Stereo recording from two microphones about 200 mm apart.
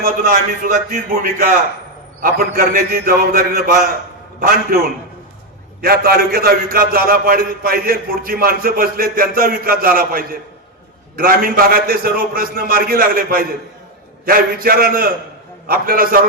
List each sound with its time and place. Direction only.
0.0 s a man's voice: 45° right (ahead or behind)
5.8 s a man's voice: 50° right (ahead or behind)